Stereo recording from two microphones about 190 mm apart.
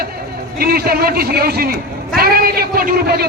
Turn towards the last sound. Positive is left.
turn(degrees=-55)  # may be behind; listen again after turning